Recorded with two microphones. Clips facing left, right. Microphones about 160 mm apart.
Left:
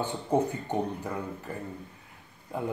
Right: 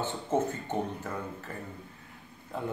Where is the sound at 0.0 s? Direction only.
15° left (ahead or behind).